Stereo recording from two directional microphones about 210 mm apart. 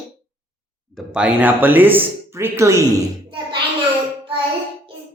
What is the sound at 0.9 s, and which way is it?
Speech, 5° right (ahead or behind).